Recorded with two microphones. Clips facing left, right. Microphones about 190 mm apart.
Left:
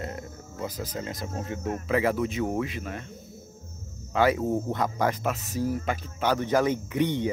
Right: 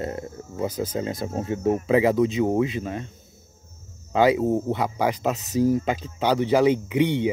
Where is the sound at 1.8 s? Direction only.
20° right (ahead or behind).